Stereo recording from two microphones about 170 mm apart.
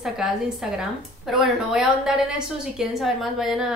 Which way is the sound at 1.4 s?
Centre (ahead or behind).